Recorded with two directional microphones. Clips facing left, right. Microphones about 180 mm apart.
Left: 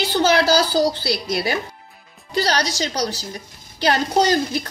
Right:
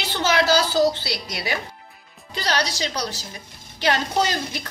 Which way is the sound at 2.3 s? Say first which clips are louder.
Left 4 dB; 40° left (ahead or behind).